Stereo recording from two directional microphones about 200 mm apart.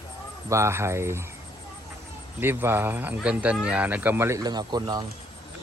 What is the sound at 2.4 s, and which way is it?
Speech, 10° right (ahead or behind).